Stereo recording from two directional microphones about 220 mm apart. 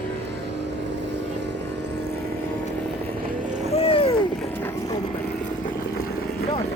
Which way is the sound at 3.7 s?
25° left (ahead or behind).